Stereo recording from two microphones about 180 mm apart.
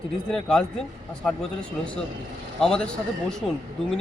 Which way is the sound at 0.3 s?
5° left (ahead or behind).